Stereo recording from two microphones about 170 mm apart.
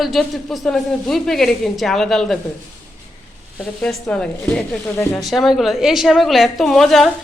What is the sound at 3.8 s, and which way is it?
Speech, 5° left (ahead or behind).